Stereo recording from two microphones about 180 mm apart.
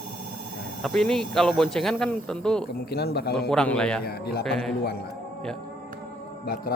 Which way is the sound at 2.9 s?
60° left (ahead or behind).